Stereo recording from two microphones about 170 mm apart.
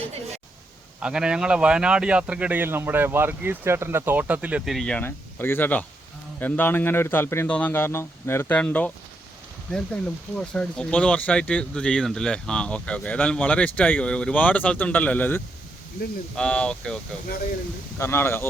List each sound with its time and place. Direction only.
0.9 s speech: 5° right (ahead or behind); by 18.4 s 15° left (ahead or behind)